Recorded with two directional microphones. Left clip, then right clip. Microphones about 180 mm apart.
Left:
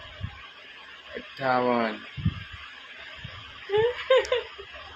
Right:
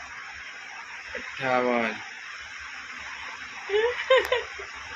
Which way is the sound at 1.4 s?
20° left (ahead or behind).